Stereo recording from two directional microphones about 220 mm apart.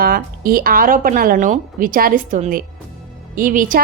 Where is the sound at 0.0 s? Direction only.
40° right (ahead or behind).